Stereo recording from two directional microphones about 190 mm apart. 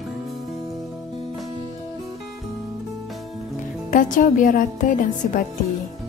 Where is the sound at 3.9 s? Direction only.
45° left (ahead or behind).